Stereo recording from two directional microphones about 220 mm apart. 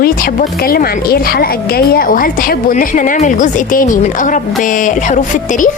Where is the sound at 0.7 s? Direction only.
40° left (ahead or behind).